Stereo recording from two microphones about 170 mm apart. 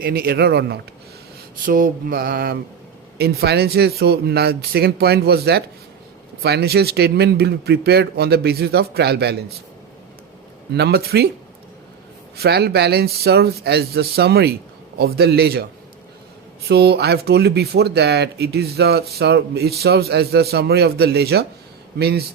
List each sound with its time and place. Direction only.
0.0 s speech: 60° right (ahead or behind)
1.6 s mantra: 55° right (ahead or behind)
3.2 s speech: 70° right (ahead or behind)
10.7 s speech: 75° right (ahead or behind)
12.4 s speech: 70° right (ahead or behind)
16.6 s speech: 70° right (ahead or behind)